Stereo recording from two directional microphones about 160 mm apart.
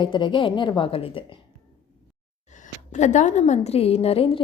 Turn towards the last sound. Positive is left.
turn(degrees=35)  # may be behind; listen again after turning